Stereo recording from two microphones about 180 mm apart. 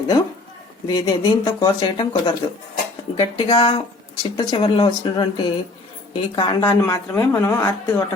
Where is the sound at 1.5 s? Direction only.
25° left (ahead or behind).